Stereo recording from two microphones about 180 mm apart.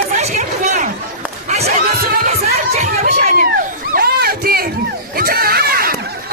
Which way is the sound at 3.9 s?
55° right (ahead or behind).